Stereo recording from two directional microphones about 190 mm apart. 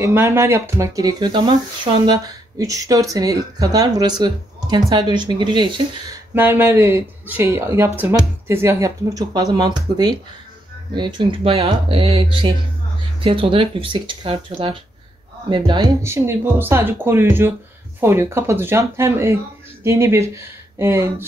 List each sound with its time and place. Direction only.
0.0 s speech: 15° right (ahead or behind)
6.3 s speech: 10° right (ahead or behind)